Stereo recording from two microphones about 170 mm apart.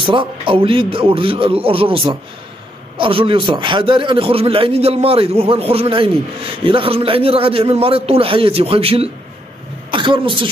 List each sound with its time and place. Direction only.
0.0 s a man's voice: 30° right (ahead or behind)